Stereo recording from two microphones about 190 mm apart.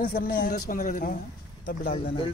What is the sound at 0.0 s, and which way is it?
Speech, 50° left (ahead or behind).